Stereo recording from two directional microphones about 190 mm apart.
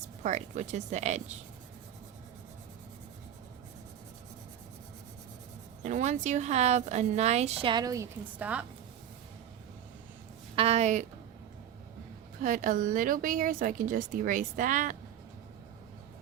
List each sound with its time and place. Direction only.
0.2 s speech: 40° right (ahead or behind)
5.8 s speech: 40° right (ahead or behind); by 8.0 s 20° right (ahead or behind)
8.4 s a woman's voice: 5° right (ahead or behind)
10.5 s speech: 30° right (ahead or behind)
12.4 s speech: 45° right (ahead or behind)